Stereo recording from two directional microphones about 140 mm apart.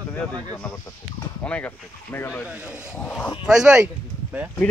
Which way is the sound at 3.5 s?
5° right (ahead or behind).